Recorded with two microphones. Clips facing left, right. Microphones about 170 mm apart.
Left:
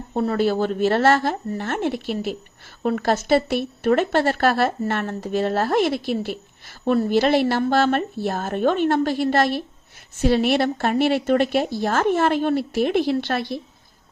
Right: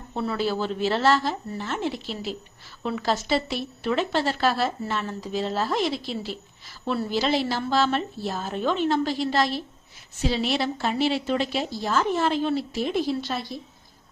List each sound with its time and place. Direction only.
0.1 s speech: 45° left (ahead or behind); by 13.6 s 70° left (ahead or behind)